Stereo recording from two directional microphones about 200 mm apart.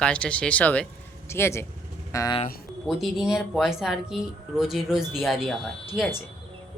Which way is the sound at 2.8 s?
Centre (ahead or behind).